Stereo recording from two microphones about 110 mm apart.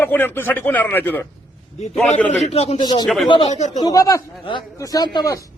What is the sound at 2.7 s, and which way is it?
Speech, 40° left (ahead or behind).